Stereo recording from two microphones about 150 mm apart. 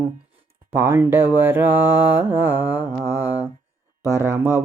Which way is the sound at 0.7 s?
15° right (ahead or behind).